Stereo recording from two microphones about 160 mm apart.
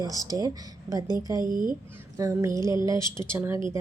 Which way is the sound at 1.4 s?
60° right (ahead or behind).